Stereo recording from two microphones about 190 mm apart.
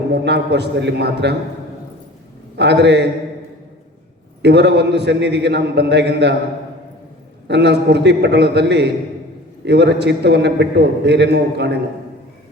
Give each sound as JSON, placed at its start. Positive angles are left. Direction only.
{"t": 0.1, "sound": "a man's voice", "side_deg": -65}
{"t": 2.6, "sound": "a man's voice", "side_deg": -60}
{"t": 4.4, "sound": "a man's voice", "side_deg": -60}
{"t": 7.4, "sound": "a man's voice", "side_deg": -60}